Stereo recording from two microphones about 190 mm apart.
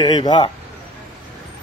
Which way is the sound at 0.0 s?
20° left (ahead or behind).